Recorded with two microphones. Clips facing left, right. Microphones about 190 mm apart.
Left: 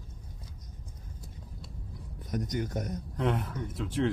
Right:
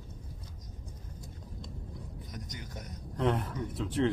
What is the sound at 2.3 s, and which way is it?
Speech, 60° left (ahead or behind).